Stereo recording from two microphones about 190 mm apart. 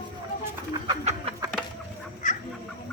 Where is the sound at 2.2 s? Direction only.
45° left (ahead or behind).